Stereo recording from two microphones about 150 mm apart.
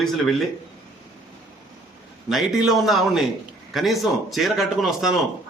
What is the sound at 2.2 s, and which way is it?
Speech, centre (ahead or behind).